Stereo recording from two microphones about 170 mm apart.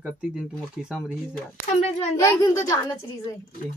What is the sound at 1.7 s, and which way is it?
Speech, 40° left (ahead or behind).